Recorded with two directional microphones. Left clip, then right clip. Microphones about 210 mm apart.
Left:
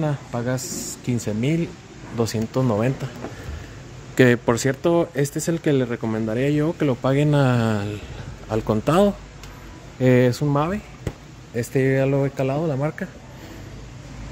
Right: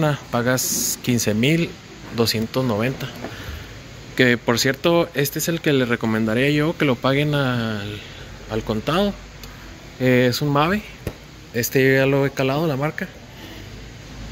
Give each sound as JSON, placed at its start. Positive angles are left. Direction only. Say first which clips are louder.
{"t": 0.0, "sound": "speech", "louder": "right 5 dB", "side_deg": 0}
{"t": 4.1, "sound": "speech", "louder": "even", "side_deg": 20}
{"t": 10.4, "sound": "speech", "louder": "right 3 dB", "side_deg": 5}